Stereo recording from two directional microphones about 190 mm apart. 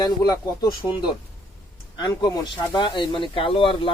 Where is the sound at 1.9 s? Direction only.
20° left (ahead or behind).